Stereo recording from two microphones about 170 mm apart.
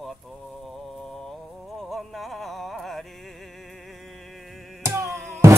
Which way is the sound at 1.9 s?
Centre (ahead or behind).